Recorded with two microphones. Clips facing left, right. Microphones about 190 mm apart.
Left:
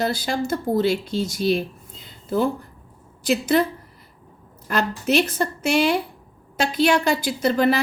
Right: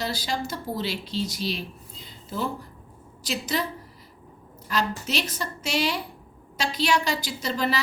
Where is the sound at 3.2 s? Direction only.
55° left (ahead or behind).